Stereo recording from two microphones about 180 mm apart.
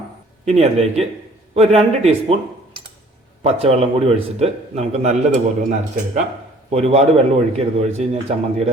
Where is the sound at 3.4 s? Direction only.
35° right (ahead or behind).